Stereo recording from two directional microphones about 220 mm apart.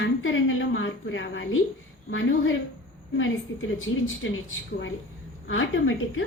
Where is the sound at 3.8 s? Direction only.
65° left (ahead or behind).